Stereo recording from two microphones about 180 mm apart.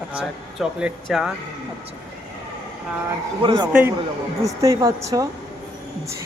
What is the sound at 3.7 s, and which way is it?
A woman's voice, 10° right (ahead or behind).